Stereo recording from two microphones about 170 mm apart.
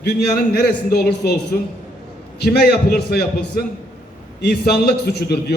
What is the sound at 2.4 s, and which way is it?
Speech, 70° left (ahead or behind).